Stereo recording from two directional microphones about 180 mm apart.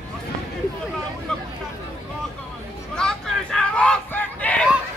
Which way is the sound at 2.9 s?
5° left (ahead or behind).